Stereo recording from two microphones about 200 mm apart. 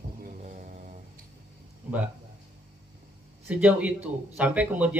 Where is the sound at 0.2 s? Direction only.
40° right (ahead or behind).